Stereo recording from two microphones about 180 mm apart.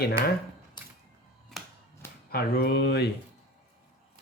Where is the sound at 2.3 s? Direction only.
60° left (ahead or behind).